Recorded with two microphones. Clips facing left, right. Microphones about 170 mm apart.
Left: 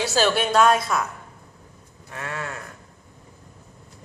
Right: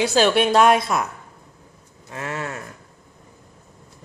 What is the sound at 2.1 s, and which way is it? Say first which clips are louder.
Speech: right 3 dB; 20° right (ahead or behind).